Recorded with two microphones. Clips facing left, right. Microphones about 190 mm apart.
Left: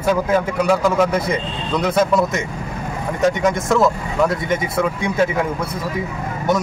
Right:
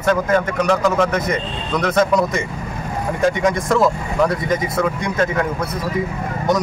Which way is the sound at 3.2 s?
Centre (ahead or behind).